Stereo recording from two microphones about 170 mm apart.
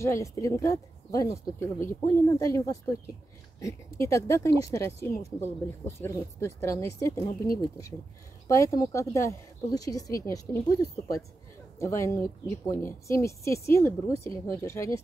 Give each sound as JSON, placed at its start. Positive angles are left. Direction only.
{"t": 0.0, "sound": "speech", "side_deg": 15}